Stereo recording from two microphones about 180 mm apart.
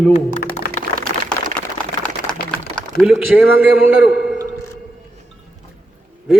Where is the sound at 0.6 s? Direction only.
55° left (ahead or behind).